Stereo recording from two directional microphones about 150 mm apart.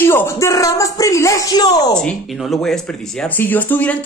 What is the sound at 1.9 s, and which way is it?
Speech, 5° left (ahead or behind).